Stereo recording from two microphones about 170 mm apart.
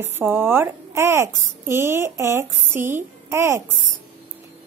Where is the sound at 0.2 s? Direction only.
10° right (ahead or behind).